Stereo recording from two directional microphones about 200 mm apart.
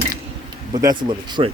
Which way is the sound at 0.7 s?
20° right (ahead or behind).